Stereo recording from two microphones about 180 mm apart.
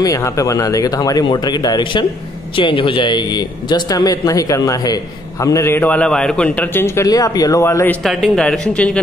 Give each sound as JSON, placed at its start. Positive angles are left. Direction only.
{"t": 0.0, "sound": "a man's voice", "side_deg": 20}
{"t": 8.0, "sound": "speech", "side_deg": 0}